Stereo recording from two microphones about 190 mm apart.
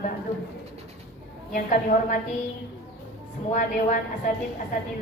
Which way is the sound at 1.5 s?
45° left (ahead or behind).